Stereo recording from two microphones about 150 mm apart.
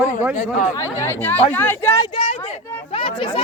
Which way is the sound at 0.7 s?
20° left (ahead or behind).